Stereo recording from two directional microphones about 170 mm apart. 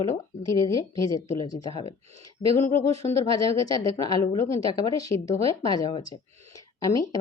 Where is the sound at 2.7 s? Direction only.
15° left (ahead or behind).